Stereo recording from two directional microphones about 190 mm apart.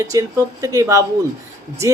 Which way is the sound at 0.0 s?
15° right (ahead or behind).